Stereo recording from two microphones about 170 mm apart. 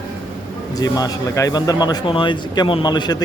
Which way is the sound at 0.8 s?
20° left (ahead or behind).